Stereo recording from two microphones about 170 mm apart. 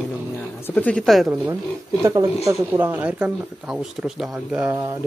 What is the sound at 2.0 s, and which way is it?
Speech, 20° right (ahead or behind).